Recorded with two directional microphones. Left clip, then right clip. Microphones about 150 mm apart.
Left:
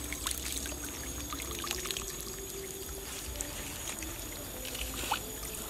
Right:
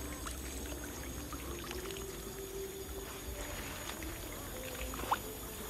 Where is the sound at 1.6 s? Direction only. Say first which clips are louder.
Left 8 dB; 20° left (ahead or behind).